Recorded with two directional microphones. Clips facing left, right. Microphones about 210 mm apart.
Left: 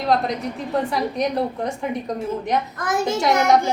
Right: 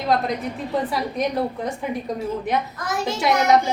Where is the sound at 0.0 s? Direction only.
Centre (ahead or behind).